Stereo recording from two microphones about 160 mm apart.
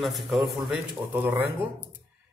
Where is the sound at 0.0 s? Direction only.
Centre (ahead or behind).